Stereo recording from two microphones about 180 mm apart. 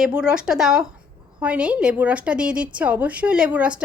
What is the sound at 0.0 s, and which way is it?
A woman's voice, 5° right (ahead or behind).